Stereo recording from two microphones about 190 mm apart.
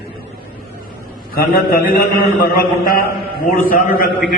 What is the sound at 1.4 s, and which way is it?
Speech, 50° left (ahead or behind).